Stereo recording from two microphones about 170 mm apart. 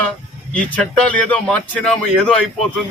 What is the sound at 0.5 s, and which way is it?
Speech, 5° left (ahead or behind).